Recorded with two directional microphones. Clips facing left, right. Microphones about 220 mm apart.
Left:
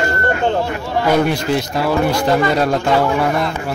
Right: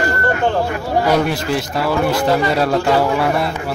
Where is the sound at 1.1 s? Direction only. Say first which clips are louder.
Left 1 dB; centre (ahead or behind).